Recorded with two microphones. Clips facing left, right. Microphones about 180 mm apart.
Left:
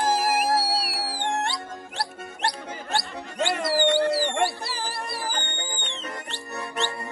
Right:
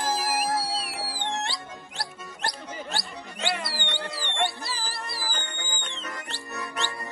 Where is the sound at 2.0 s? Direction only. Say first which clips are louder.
Left 5 dB; 60° left (ahead or behind); by 4.3 s 40° left (ahead or behind).